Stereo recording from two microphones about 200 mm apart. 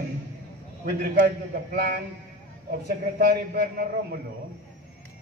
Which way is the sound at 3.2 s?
50° right (ahead or behind).